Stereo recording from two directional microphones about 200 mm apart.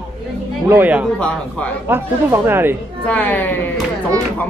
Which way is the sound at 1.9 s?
10° right (ahead or behind).